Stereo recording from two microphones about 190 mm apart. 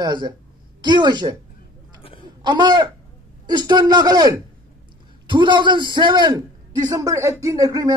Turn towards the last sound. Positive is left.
turn(degrees=-20)  # may be behind; listen again after turning